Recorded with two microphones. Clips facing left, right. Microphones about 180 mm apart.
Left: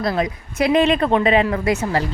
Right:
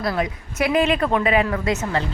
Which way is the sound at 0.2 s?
35° left (ahead or behind).